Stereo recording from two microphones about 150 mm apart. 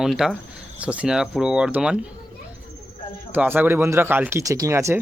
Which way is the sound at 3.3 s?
15° right (ahead or behind).